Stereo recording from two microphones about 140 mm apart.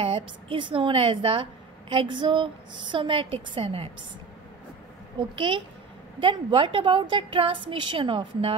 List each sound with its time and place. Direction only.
0.0 s a woman's voice: 40° right (ahead or behind)
5.3 s a woman's voice: 40° right (ahead or behind)